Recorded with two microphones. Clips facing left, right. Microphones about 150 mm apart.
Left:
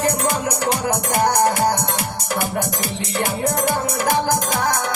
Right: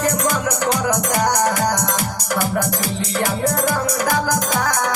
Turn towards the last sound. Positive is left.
turn(degrees=25)  # may be behind; listen again after turning